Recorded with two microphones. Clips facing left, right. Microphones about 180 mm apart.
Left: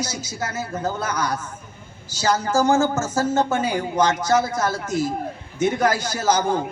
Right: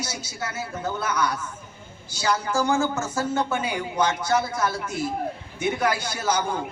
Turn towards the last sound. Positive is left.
turn(degrees=40)  # may be behind; listen again after turning